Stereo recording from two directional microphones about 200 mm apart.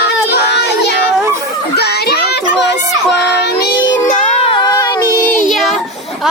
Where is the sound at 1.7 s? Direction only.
55° left (ahead or behind).